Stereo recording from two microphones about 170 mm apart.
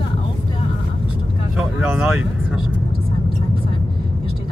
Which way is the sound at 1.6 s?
5° right (ahead or behind).